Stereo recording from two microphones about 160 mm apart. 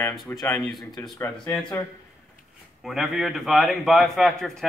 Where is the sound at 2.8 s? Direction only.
Centre (ahead or behind).